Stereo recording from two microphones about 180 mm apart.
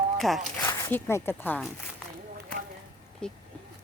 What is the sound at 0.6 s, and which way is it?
Speech, 10° left (ahead or behind).